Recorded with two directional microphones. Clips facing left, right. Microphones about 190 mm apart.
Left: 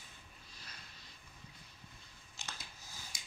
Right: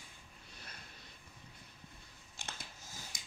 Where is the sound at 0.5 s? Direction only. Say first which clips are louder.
Right 3 dB; 55° right (ahead or behind).